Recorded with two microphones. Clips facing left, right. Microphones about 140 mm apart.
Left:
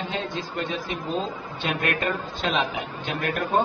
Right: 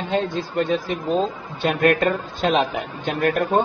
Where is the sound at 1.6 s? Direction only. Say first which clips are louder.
Right 8 dB; 45° right (ahead or behind).